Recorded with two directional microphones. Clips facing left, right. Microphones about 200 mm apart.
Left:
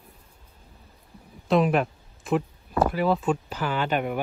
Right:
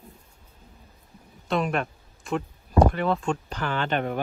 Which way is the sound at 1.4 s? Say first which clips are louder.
Left 5 dB; centre (ahead or behind).